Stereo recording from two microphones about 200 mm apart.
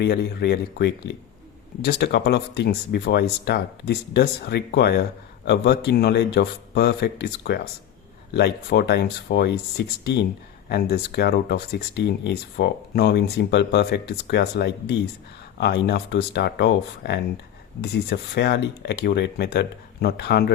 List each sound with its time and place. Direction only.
0.0 s speech: 55° left (ahead or behind)